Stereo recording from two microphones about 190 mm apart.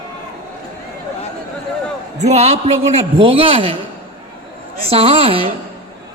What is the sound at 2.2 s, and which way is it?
A man's voice, 35° right (ahead or behind).